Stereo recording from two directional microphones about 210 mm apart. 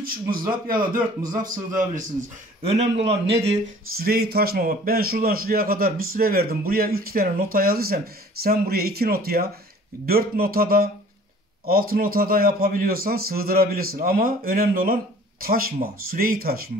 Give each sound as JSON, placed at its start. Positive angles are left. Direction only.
{"t": 0.0, "sound": "a man's voice", "side_deg": -40}
{"t": 4.0, "sound": "speech", "side_deg": -50}
{"t": 11.9, "sound": "speech", "side_deg": -45}